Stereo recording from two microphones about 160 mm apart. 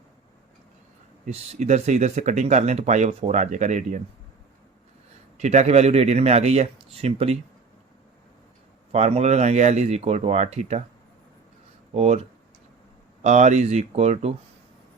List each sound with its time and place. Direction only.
1.2 s speech: 45° right (ahead or behind)
5.4 s speech: 45° right (ahead or behind)
8.9 s speech: 45° right (ahead or behind)
11.9 s speech: 40° right (ahead or behind)
13.2 s speech: 45° right (ahead or behind)